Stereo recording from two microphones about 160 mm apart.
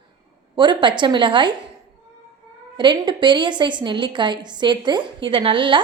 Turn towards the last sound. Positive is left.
turn(degrees=-30)  # may be behind; listen again after turning